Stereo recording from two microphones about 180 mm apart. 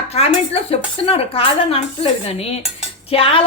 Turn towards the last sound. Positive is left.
turn(degrees=30)  # may be behind; listen again after turning